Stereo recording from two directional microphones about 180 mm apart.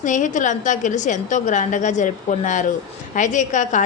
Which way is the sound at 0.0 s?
45° left (ahead or behind).